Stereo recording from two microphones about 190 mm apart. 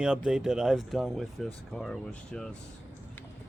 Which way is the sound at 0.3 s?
5° right (ahead or behind).